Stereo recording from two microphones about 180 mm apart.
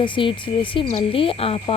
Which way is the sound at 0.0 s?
30° left (ahead or behind).